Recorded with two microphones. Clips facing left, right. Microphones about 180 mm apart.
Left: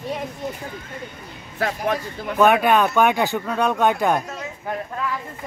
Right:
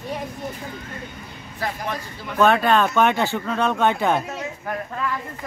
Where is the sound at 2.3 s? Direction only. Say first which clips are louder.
Left 1 dB; 15° left (ahead or behind).